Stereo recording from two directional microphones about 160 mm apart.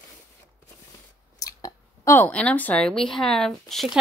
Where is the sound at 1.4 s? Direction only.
20° left (ahead or behind).